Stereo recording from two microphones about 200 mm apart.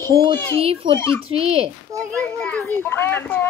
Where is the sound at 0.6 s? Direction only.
30° right (ahead or behind).